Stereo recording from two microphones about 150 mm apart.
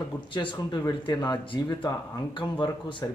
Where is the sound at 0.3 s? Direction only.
30° left (ahead or behind).